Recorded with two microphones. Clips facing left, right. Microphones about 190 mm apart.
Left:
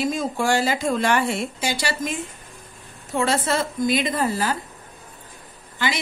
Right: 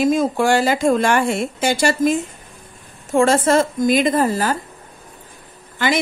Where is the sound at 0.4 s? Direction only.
60° right (ahead or behind).